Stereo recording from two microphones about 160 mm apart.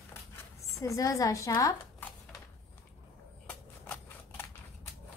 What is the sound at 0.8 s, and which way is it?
Speech, 20° left (ahead or behind).